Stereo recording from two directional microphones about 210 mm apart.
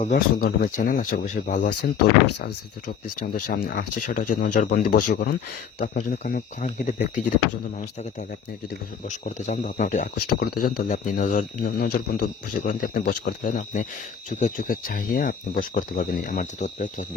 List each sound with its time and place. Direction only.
0.0 s speech: 45° left (ahead or behind)
9.0 s speech: 35° left (ahead or behind)